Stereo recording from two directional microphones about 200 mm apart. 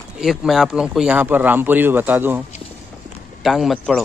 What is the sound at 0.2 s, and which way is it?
Speech, centre (ahead or behind).